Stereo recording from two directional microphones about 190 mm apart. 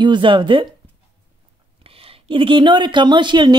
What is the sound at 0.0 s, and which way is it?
Speech, 25° right (ahead or behind).